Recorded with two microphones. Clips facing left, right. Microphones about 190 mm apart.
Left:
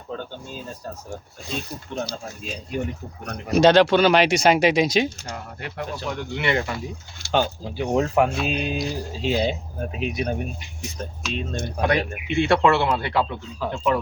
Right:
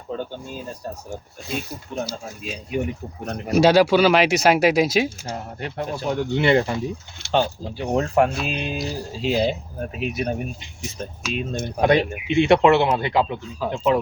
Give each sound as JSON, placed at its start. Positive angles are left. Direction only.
{"t": 1.5, "sound": "speech", "side_deg": -5}
{"t": 5.3, "sound": "speech", "side_deg": -30}
{"t": 7.8, "sound": "speech", "side_deg": 0}
{"t": 11.8, "sound": "speech", "side_deg": -20}